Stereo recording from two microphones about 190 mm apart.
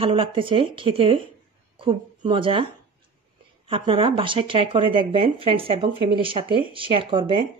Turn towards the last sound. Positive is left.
turn(degrees=-25)  # may be behind; listen again after turning